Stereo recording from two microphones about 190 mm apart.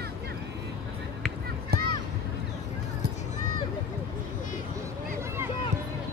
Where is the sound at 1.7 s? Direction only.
55° right (ahead or behind).